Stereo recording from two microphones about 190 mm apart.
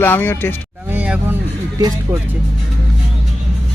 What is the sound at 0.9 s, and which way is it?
Vehicle, 5° right (ahead or behind).